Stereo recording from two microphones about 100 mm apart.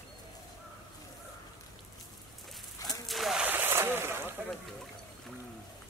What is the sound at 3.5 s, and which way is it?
Boat, 20° right (ahead or behind).